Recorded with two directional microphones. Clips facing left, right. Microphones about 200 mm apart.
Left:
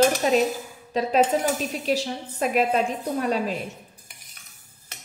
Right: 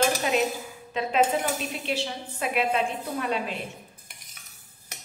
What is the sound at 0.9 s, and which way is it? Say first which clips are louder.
Cutlery: left 5 dB; 35° left (ahead or behind).